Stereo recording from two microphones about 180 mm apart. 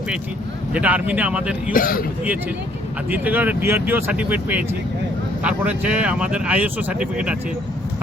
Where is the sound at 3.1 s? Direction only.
10° right (ahead or behind).